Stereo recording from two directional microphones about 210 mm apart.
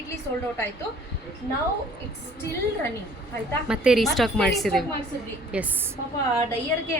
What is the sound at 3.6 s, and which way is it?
A woman's voice, 5° right (ahead or behind).